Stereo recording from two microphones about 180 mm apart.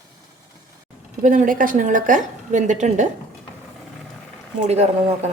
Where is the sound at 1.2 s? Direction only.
45° right (ahead or behind).